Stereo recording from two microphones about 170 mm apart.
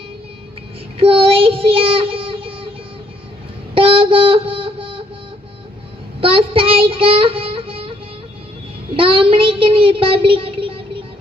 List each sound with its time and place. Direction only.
0.9 s child singing: 35° right (ahead or behind)
3.8 s a sound: 35° right (ahead or behind)
6.1 s child singing: 35° right (ahead or behind)
9.0 s a child's voice: 30° right (ahead or behind)